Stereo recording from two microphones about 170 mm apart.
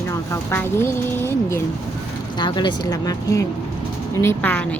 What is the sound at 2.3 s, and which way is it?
Speech, 25° left (ahead or behind).